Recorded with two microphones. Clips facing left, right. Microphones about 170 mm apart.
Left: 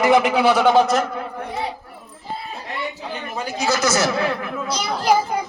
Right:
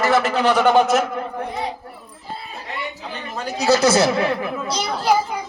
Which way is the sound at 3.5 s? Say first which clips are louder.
Right 5 dB; 35° right (ahead or behind).